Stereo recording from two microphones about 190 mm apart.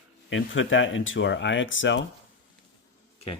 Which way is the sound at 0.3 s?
85° left.